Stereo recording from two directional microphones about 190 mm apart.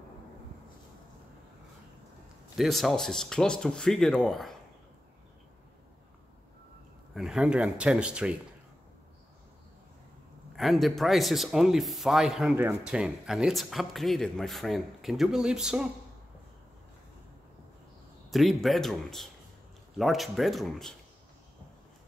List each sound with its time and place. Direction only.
2.5 s a man's voice: centre (ahead or behind)
7.2 s a man's voice: 5° right (ahead or behind)
10.5 s a man's voice: centre (ahead or behind)
18.3 s a man's voice: centre (ahead or behind)